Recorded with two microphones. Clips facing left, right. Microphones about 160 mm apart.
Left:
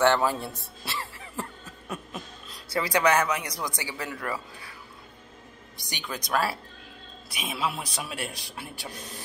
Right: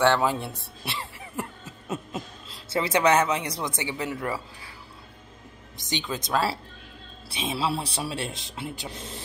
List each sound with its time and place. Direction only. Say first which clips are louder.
0.2 s speech: right 1 dB; 20° right (ahead or behind)
0.6 s a sound: even; 20° right (ahead or behind)
5.8 s speech: right 6 dB; 20° right (ahead or behind)